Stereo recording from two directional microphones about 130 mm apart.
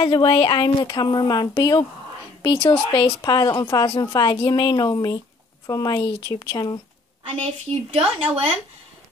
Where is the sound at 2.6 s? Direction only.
40° left (ahead or behind).